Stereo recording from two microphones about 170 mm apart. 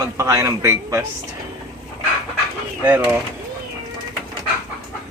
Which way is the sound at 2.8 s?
10° right (ahead or behind).